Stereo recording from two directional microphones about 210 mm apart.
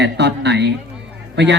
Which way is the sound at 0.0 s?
55° right (ahead or behind).